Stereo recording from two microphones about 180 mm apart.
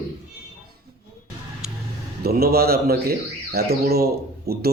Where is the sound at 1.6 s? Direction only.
5° right (ahead or behind).